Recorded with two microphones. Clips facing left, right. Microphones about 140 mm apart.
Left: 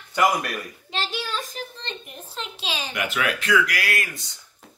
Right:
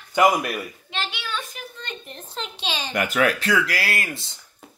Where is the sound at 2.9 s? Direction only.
40° right (ahead or behind).